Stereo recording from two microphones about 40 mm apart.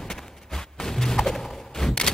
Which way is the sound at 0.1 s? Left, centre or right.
Centre.